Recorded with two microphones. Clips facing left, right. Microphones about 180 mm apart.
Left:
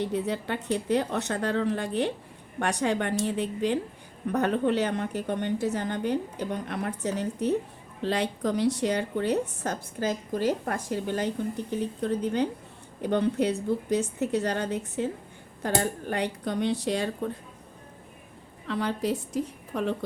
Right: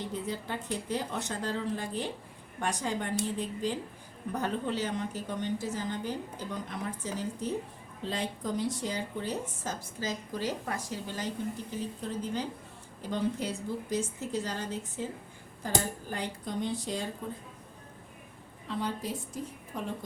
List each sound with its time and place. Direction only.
0.0 s a woman's voice: 70° left (ahead or behind)
18.7 s a woman's voice: 75° left (ahead or behind)